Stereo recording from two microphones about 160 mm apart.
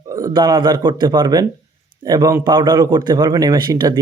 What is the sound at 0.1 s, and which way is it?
Speech, 20° right (ahead or behind).